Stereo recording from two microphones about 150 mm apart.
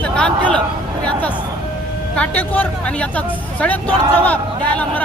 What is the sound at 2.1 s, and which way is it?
Speech, 10° left (ahead or behind).